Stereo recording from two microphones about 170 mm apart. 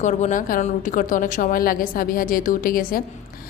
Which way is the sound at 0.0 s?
45° left (ahead or behind).